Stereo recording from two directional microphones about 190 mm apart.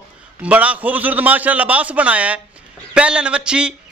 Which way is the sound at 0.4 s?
5° right (ahead or behind).